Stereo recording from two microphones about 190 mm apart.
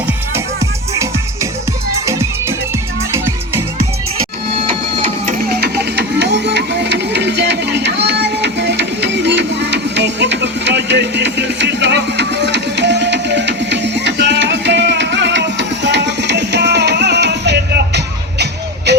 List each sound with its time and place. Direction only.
4.7 s printer: 25° right (ahead or behind)
5.4 s music: 60° right (ahead or behind)